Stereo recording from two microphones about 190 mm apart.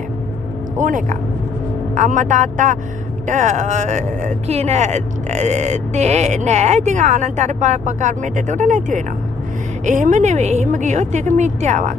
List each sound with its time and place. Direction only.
0.7 s speech: 40° right (ahead or behind)